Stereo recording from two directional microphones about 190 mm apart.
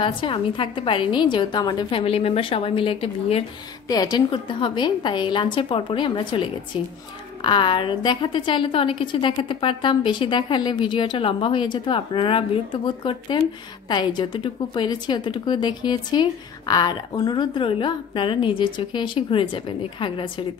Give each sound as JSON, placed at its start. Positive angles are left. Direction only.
{"t": 0.0, "sound": "a woman's voice", "side_deg": 25}
{"t": 3.8, "sound": "a woman's voice", "side_deg": 20}